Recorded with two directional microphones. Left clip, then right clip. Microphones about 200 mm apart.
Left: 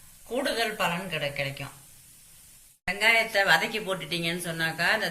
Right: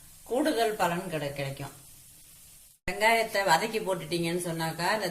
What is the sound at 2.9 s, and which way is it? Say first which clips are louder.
Speech: left 2 dB; 55° right (ahead or behind).